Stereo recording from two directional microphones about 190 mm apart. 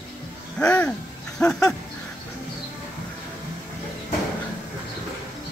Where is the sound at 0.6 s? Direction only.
5° left (ahead or behind).